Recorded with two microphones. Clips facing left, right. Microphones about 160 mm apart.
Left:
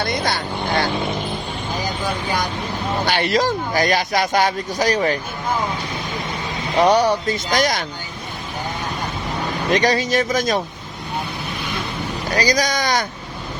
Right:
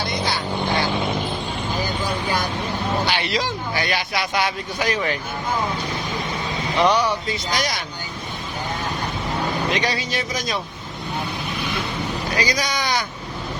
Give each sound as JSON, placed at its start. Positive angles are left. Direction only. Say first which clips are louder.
{"t": 0.0, "sound": "speech", "louder": "left 2 dB", "side_deg": 55}
{"t": 3.1, "sound": "speech", "louder": "left 5 dB", "side_deg": 45}
{"t": 6.7, "sound": "speech", "louder": "left 4 dB", "side_deg": 45}
{"t": 9.7, "sound": "speech", "louder": "left 7 dB", "side_deg": 45}
{"t": 12.3, "sound": "speech", "louder": "left 6 dB", "side_deg": 40}